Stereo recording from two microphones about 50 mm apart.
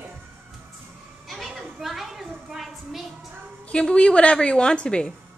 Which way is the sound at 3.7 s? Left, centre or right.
Left.